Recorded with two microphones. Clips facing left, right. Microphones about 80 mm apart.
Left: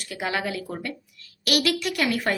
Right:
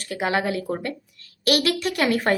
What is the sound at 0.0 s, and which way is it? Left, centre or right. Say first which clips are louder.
Speech: right 4 dB; right.